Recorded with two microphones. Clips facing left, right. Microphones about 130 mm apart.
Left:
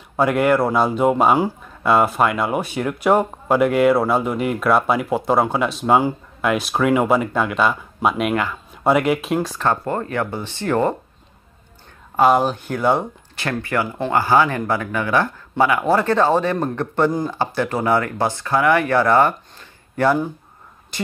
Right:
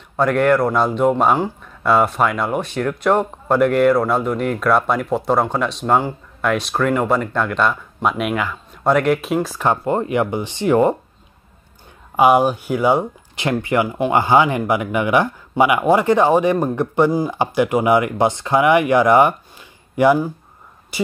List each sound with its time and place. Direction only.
0.1 s speech: 5° left (ahead or behind)
9.6 s speech: 15° right (ahead or behind)
12.2 s speech: 10° right (ahead or behind)